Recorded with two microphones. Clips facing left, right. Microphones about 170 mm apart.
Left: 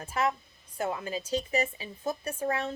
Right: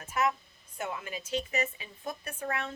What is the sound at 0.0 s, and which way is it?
Speech, 30° left (ahead or behind).